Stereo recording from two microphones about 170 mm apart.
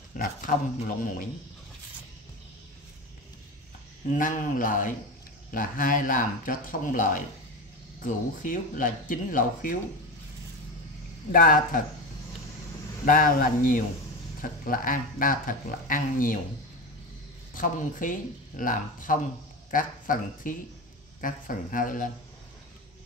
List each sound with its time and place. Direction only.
0.2 s speech: 55° left (ahead or behind)
4.1 s speech: 50° left (ahead or behind)
11.3 s speech: 55° left (ahead or behind)
13.0 s speech: 55° left (ahead or behind)
17.6 s speech: 50° left (ahead or behind)